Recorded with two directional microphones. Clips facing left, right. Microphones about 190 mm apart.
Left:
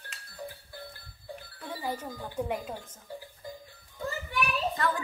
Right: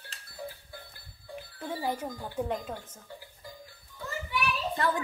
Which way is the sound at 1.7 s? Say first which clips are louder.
Right 2 dB; 15° right (ahead or behind).